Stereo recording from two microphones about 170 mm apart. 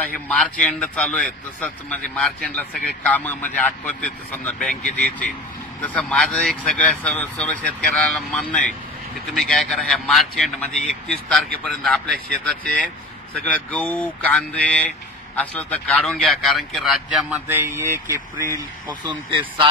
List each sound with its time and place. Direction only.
0.3 s a man's voice: 5° left (ahead or behind)
5.8 s a man's voice: 5° left (ahead or behind)
17.5 s speech: 15° right (ahead or behind)
19.0 s speech: 25° right (ahead or behind)